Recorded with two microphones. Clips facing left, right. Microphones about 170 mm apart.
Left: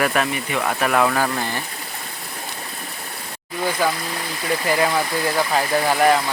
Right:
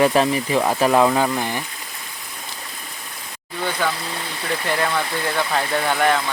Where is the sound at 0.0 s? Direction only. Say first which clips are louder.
Right 4 dB; 30° right (ahead or behind).